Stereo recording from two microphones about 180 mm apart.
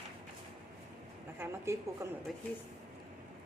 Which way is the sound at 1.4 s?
15° right (ahead or behind).